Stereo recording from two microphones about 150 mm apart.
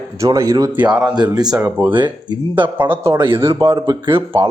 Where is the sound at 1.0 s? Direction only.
25° right (ahead or behind).